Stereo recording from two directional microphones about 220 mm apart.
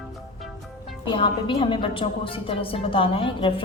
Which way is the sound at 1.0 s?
25° left (ahead or behind).